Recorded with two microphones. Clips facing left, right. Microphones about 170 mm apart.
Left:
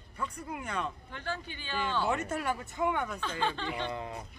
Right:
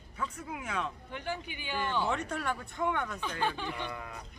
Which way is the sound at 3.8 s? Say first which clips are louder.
Left 4 dB; 20° left (ahead or behind).